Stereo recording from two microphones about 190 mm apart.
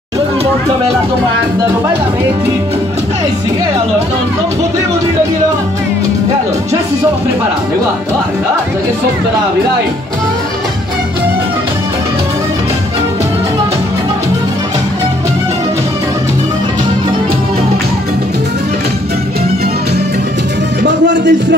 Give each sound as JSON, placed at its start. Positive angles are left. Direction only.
{"t": 20.8, "sound": "speech", "side_deg": -70}